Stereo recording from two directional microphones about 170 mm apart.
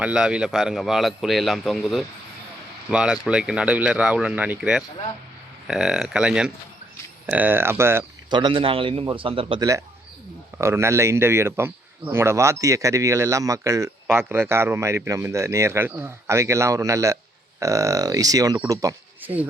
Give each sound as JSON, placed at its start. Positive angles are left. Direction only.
{"t": 0.0, "sound": "a man's voice", "side_deg": -5}
{"t": 8.3, "sound": "a man's voice", "side_deg": -25}
{"t": 10.6, "sound": "speech", "side_deg": -15}